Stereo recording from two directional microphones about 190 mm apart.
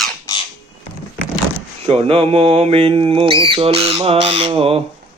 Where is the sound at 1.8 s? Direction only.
30° right (ahead or behind).